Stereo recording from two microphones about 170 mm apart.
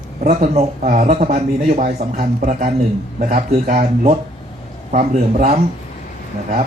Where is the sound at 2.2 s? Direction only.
55° right (ahead or behind).